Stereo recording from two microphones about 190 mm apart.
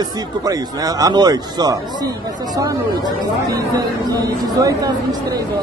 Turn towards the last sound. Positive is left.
turn(degrees=-20)  # may be behind; listen again after turning